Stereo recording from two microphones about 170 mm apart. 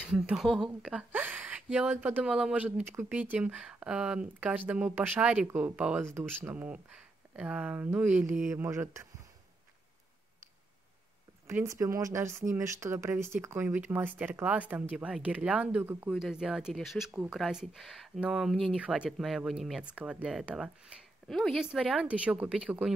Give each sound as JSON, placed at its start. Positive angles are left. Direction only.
{"t": 0.1, "sound": "a woman's voice", "side_deg": 0}
{"t": 11.4, "sound": "a woman's voice", "side_deg": -15}